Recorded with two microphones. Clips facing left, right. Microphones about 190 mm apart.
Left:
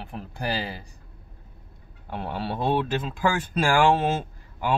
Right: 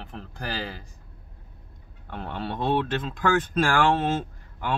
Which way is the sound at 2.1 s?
10° left (ahead or behind).